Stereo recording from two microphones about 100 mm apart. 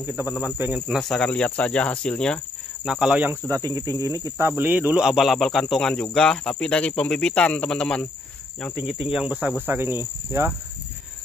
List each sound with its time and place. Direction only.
0.6 s speech: 15° right (ahead or behind)
0.9 s speech: 5° left (ahead or behind)
2.9 s speech: 10° right (ahead or behind)
3.4 s speech: 35° right (ahead or behind)
4.4 s speech: 25° right (ahead or behind)
5.0 s speech: 5° right (ahead or behind)
8.7 s speech: 15° right (ahead or behind)
9.7 s speech: 25° right (ahead or behind)